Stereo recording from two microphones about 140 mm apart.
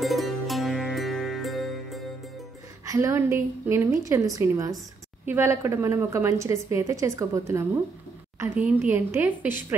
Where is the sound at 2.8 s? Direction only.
25° right (ahead or behind).